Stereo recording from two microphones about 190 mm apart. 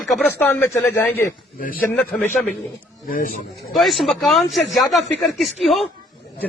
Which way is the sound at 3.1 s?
50° left (ahead or behind).